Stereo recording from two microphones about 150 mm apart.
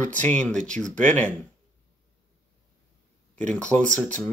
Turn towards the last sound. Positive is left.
turn(degrees=10)  # may be behind; listen again after turning